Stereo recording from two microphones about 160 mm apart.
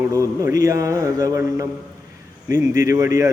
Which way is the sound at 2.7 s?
20° right (ahead or behind).